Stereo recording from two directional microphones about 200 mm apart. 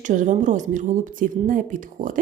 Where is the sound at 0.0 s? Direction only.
40° right (ahead or behind).